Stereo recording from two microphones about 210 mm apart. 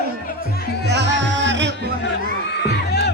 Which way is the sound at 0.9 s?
55° right (ahead or behind).